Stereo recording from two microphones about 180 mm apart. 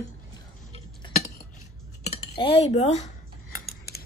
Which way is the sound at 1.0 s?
40° left (ahead or behind).